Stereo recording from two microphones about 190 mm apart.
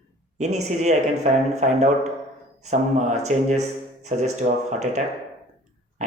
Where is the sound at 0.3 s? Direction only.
40° right (ahead or behind).